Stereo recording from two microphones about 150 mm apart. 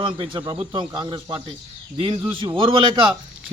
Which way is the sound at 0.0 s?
35° right (ahead or behind).